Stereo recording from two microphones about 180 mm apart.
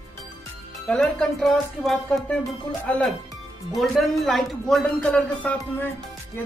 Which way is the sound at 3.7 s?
Centre (ahead or behind).